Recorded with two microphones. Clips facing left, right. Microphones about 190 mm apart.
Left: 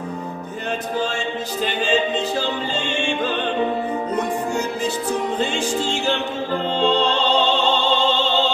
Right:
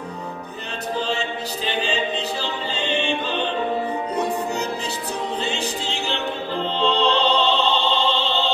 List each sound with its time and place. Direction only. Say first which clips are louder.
1.7 s music: left 3 dB; 50° left (ahead or behind)